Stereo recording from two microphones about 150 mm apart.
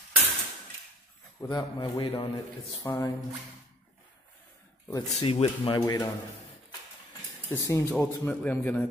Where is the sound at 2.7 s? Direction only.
25° left (ahead or behind).